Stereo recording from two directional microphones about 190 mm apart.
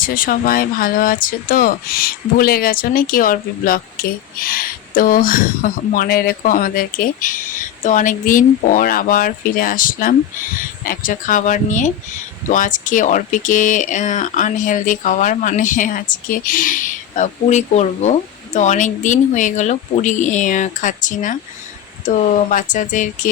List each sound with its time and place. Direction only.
0.0 s speech: 50° left (ahead or behind)